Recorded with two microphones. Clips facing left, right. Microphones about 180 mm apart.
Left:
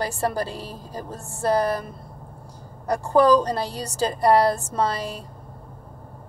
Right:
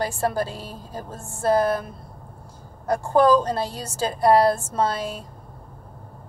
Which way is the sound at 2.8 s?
Centre (ahead or behind).